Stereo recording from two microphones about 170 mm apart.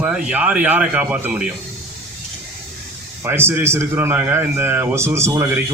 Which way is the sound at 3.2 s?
15° right (ahead or behind).